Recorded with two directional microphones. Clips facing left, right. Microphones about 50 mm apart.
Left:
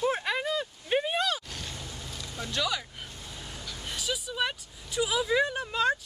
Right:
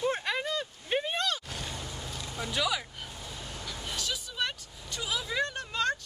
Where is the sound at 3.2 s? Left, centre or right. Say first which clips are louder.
Right 2 dB; centre.